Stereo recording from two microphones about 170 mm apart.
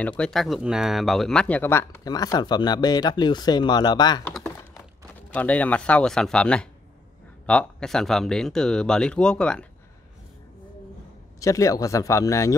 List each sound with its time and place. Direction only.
0.2 s speech: centre (ahead or behind); by 4.2 s 25° left (ahead or behind)
5.3 s speech: 10° left (ahead or behind)
11.3 s speech: 20° left (ahead or behind)